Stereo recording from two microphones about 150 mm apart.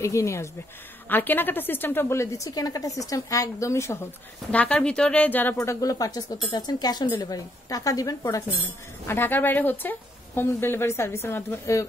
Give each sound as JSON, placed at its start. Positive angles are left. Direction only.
{"t": 0.0, "sound": "a woman's voice", "side_deg": 20}
{"t": 4.5, "sound": "a woman's voice", "side_deg": 5}